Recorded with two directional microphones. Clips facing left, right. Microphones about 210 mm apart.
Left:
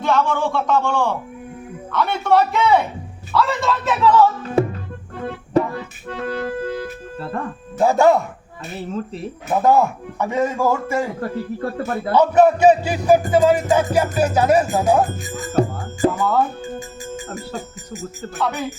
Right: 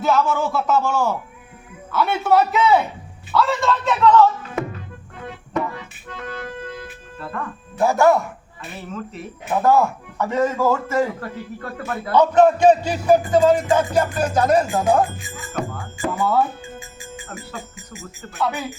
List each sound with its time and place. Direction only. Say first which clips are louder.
0.0 s speech: even; 5° right (ahead or behind)
4.6 s music: left 8 dB; 30° left (ahead or behind)
7.8 s speech: left 2 dB; 20° left (ahead or behind)
8.9 s speech: left 4 dB; 30° left (ahead or behind)
9.6 s a man's voice: left 1 dB; 15° left (ahead or behind)
11.2 s speech: left 7 dB; 35° left (ahead or behind)
12.1 s a man's voice: even; 10° left (ahead or behind)
15.0 s music: left 3 dB; 45° left (ahead or behind)
17.2 s music: left 5 dB; 40° left (ahead or behind)
18.3 s speech: even; 5° right (ahead or behind)